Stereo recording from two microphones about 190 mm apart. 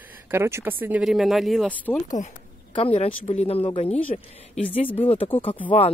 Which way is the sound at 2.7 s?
30° left (ahead or behind).